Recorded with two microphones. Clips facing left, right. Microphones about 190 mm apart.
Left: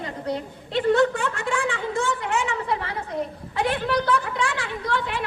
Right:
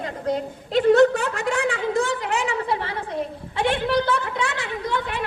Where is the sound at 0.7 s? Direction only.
40° right (ahead or behind).